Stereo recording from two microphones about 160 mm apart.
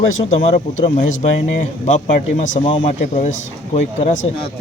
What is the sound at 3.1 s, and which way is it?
Speech, 45° left (ahead or behind).